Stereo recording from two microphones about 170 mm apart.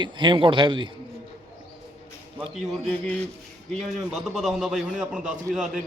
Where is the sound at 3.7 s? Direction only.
Centre (ahead or behind).